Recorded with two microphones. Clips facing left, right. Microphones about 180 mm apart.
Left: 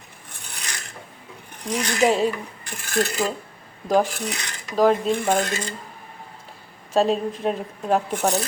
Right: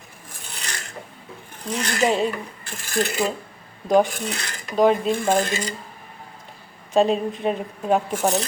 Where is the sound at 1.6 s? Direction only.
15° left (ahead or behind).